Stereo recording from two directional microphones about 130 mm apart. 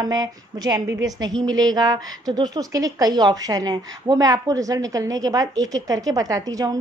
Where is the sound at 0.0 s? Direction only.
30° right (ahead or behind).